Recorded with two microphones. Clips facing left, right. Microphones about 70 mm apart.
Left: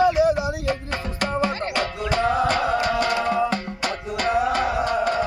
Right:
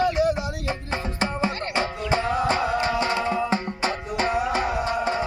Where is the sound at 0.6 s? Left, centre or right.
Centre.